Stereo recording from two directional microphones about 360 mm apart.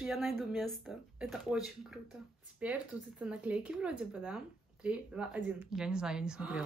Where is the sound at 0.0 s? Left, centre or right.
Centre.